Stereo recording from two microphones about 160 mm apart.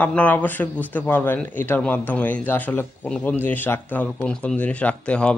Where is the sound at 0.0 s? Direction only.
10° left (ahead or behind).